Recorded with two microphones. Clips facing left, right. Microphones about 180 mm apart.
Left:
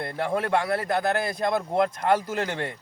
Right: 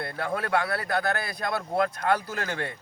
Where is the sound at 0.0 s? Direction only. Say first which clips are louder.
Left 3 dB; 20° left (ahead or behind).